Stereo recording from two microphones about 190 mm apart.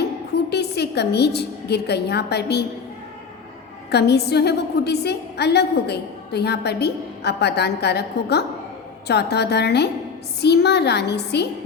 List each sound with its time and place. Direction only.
0.5 s a woman's voice: 60° left (ahead or behind)
3.9 s a woman's voice: 60° left (ahead or behind)